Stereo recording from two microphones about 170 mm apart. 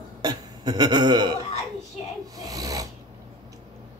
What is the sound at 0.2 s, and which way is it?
Throat clearing, 25° right (ahead or behind).